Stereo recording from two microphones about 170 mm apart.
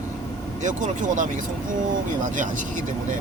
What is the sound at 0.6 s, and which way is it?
Speech, 50° right (ahead or behind).